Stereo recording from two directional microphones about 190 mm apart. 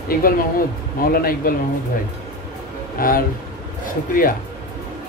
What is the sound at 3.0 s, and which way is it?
Speech, 50° left (ahead or behind).